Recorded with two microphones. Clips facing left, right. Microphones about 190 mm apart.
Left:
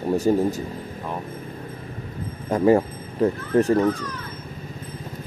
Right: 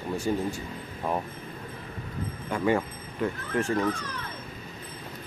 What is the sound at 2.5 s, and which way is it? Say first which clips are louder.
Speech: left 8 dB; 35° left (ahead or behind).